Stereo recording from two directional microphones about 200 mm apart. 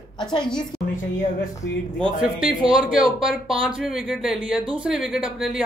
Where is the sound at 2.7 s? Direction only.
5° right (ahead or behind).